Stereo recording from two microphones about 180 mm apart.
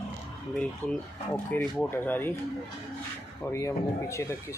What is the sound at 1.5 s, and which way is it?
Speech, 10° left (ahead or behind).